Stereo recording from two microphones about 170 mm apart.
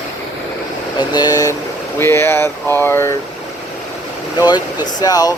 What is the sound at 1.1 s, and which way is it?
Speech, 20° left (ahead or behind).